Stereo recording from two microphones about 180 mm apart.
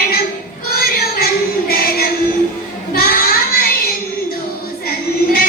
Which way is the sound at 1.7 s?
55° left (ahead or behind).